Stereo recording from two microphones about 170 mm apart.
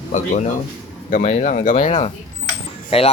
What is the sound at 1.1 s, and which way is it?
Speech, 45° left (ahead or behind).